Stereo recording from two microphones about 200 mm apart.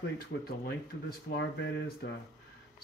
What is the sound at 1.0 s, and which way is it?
Speech, 55° left (ahead or behind).